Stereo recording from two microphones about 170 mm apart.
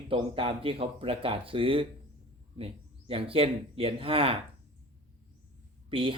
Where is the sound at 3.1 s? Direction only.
35° right (ahead or behind).